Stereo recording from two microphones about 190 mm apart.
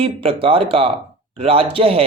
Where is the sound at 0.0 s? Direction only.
30° right (ahead or behind).